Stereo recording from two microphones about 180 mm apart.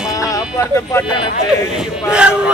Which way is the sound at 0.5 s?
15° left (ahead or behind).